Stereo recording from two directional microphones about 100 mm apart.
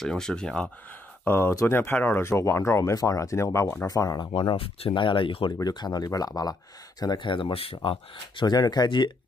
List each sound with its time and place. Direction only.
0.0 s speech: 5° left (ahead or behind)
1.2 s speech: 20° left (ahead or behind); by 4.3 s 35° left (ahead or behind)
4.3 s speech: 60° left (ahead or behind); by 5.0 s 75° left (ahead or behind)
5.0 s speech: 60° left (ahead or behind)
5.6 s speech: 45° left (ahead or behind)
8.5 s speech: 45° left (ahead or behind)